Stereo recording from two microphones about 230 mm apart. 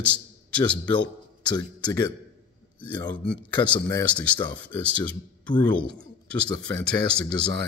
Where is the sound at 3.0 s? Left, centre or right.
Centre.